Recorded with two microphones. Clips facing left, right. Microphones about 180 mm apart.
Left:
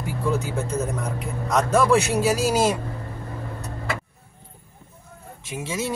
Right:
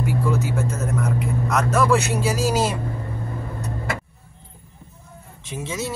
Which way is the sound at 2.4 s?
10° left (ahead or behind).